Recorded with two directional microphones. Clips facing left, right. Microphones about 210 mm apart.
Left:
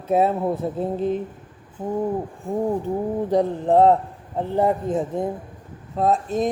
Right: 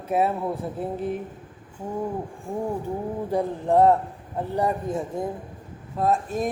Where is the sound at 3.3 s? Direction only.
20° left (ahead or behind).